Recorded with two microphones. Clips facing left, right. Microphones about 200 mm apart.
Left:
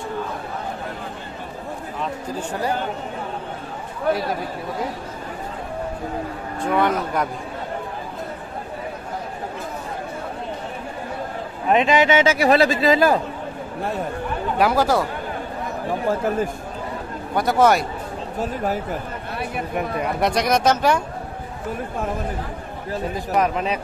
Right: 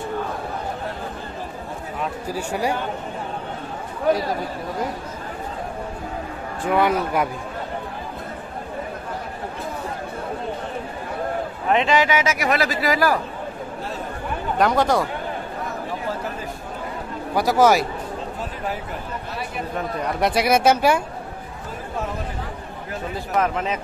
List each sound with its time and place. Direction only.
2.2 s speech: 10° right (ahead or behind)
6.7 s speech: 5° right (ahead or behind)
11.7 s speech: 20° left (ahead or behind)
14.6 s speech: 5° left (ahead or behind)
15.9 s a man's voice: 50° left (ahead or behind)
17.3 s speech: centre (ahead or behind)
20.2 s speech: 5° right (ahead or behind)
23.1 s speech: 15° left (ahead or behind)